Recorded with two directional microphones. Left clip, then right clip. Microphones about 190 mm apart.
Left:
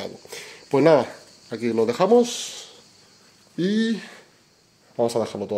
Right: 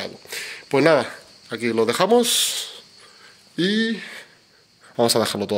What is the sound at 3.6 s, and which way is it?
Speech, 10° left (ahead or behind).